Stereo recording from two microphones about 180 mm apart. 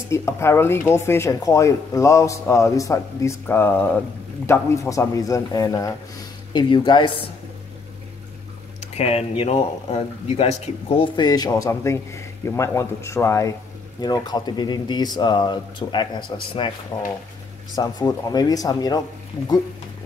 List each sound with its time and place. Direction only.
0.1 s speech: 15° left (ahead or behind)
8.9 s speech: 35° left (ahead or behind)
17.7 s speech: 20° left (ahead or behind)